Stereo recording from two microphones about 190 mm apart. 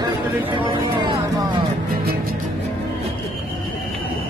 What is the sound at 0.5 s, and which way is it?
Speech, 25° right (ahead or behind).